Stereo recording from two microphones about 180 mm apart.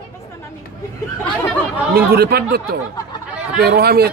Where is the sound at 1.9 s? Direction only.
60° right (ahead or behind).